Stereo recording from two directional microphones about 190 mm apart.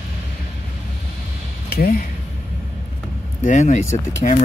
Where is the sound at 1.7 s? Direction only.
50° left (ahead or behind).